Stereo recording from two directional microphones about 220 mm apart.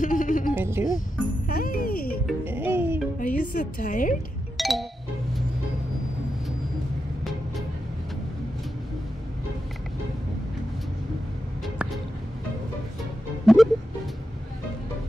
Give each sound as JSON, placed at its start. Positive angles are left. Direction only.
{"t": 0.0, "sound": "music", "side_deg": 35}
{"t": 0.6, "sound": "music", "side_deg": -10}
{"t": 1.5, "sound": "music", "side_deg": 40}
{"t": 2.2, "sound": "music", "side_deg": -10}
{"t": 3.2, "sound": "a woman's voice", "side_deg": 35}
{"t": 4.6, "sound": "music", "side_deg": 0}
{"t": 13.5, "sound": "music", "side_deg": 0}